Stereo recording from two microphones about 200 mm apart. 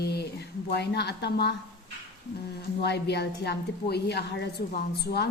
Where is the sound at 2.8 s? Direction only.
55° left (ahead or behind).